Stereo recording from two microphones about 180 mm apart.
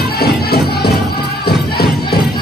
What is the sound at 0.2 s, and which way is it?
Music, 60° left (ahead or behind).